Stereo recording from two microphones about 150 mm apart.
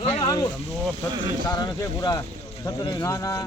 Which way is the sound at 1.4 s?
25° left (ahead or behind).